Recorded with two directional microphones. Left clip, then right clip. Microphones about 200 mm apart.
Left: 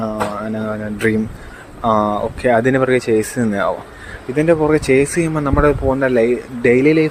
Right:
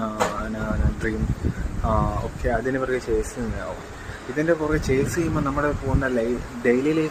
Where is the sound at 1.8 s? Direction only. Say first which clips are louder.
Left 9 dB; 45° left (ahead or behind).